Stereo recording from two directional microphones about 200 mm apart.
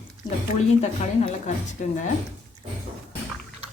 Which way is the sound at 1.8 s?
40° left (ahead or behind).